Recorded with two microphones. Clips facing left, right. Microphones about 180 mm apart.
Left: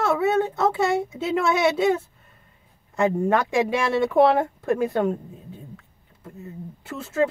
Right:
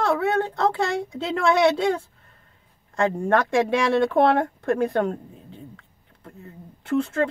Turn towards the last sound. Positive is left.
turn(degrees=5)  # may be behind; listen again after turning